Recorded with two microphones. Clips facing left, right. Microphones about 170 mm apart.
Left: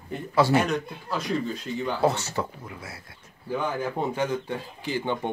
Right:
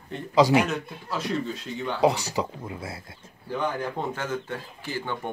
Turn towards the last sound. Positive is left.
turn(degrees=20)  # may be behind; listen again after turning